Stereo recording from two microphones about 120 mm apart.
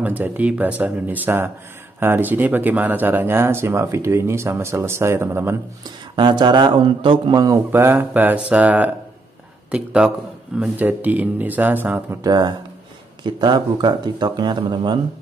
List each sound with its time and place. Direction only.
0.0 s speech: 15° right (ahead or behind)
5.9 s speech: 40° right (ahead or behind)
7.3 s speech: 30° right (ahead or behind)
12.2 s speech: 35° right (ahead or behind)